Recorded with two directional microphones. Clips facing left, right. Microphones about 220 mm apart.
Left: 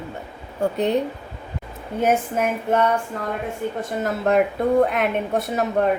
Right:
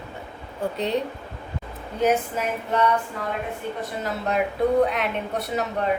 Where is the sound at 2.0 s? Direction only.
50° left (ahead or behind).